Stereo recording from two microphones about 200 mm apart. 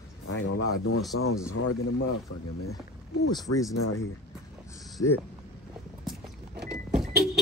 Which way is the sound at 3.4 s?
15° left (ahead or behind).